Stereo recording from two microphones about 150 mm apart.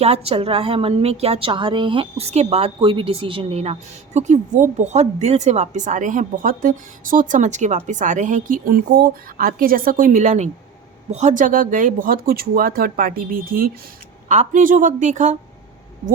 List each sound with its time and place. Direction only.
0.0 s a woman's voice: 40° right (ahead or behind); by 13.7 s 70° right (ahead or behind)
14.3 s a woman's voice: 55° right (ahead or behind)